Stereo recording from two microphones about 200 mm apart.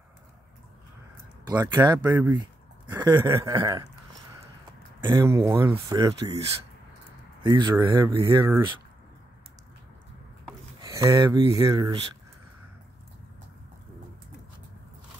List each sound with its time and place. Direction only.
1.5 s speech: 20° right (ahead or behind)
2.0 s speech: 10° right (ahead or behind)
2.3 s a sound: 20° right (ahead or behind)
3.0 s speech: 15° right (ahead or behind)
5.0 s speech: 15° right (ahead or behind)
7.4 s speech: 20° right (ahead or behind)
10.8 s speech: 15° right (ahead or behind)